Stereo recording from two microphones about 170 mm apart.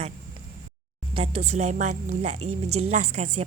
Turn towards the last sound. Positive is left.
turn(degrees=-40)  # may be behind; listen again after turning